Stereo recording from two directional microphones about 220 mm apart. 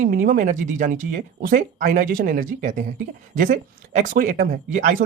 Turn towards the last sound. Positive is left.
turn(degrees=-35)  # may be behind; listen again after turning